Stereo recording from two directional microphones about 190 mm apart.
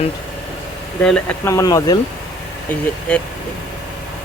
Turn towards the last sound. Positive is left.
turn(degrees=5)  # may be behind; listen again after turning